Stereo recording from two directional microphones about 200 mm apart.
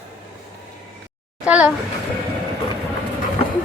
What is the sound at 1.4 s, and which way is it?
Speech, 5° right (ahead or behind).